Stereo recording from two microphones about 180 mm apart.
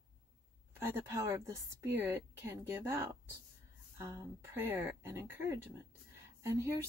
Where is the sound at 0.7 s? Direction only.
15° right (ahead or behind).